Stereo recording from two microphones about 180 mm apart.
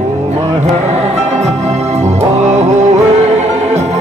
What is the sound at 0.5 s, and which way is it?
Music, 40° right (ahead or behind).